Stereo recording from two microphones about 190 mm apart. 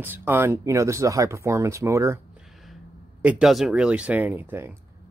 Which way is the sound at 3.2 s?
5° right (ahead or behind).